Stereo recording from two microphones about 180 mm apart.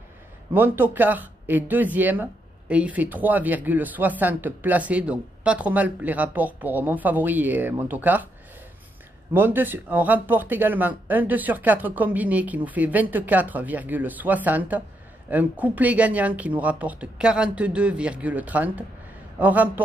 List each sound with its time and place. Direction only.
0.5 s speech: 10° right (ahead or behind)
9.3 s speech: 10° right (ahead or behind)